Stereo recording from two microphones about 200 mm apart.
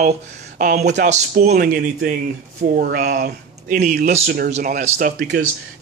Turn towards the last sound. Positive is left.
turn(degrees=-40)  # may be behind; listen again after turning